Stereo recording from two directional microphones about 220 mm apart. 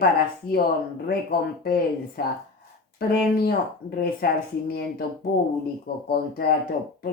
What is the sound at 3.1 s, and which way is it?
Speech, 45° left (ahead or behind).